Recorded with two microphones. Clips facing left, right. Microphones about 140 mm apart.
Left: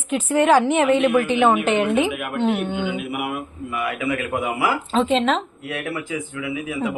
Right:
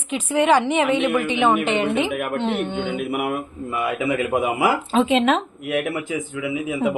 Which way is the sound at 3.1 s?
50° right (ahead or behind).